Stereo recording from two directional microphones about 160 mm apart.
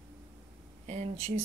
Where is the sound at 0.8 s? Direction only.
45° right (ahead or behind).